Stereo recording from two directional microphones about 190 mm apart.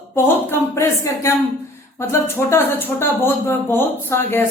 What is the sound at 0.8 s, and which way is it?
Speech, 15° left (ahead or behind).